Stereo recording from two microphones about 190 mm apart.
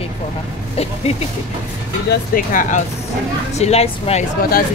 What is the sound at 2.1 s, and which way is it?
Speech, 45° left (ahead or behind).